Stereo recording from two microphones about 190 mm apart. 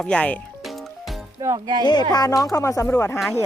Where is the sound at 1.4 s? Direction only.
20° right (ahead or behind).